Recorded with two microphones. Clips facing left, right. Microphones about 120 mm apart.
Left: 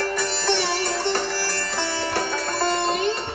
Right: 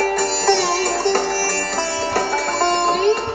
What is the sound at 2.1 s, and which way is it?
Music, 35° right (ahead or behind).